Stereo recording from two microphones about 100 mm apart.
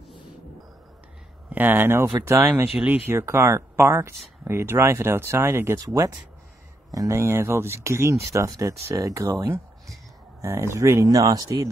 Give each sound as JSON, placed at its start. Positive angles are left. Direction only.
{"t": 1.5, "sound": "speech", "side_deg": -20}
{"t": 5.8, "sound": "speech", "side_deg": -40}